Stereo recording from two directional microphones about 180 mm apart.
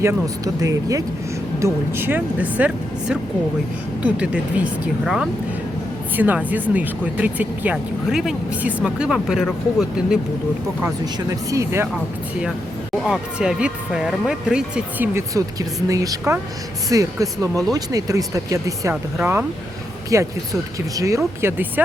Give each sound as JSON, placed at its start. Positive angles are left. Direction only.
{"t": 0.0, "sound": "speech", "side_deg": -15}
{"t": 11.0, "sound": "speech", "side_deg": -15}
{"t": 13.0, "sound": "speech", "side_deg": -5}